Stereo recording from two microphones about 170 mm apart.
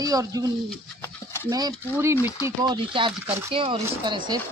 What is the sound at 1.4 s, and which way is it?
Speech, 25° right (ahead or behind).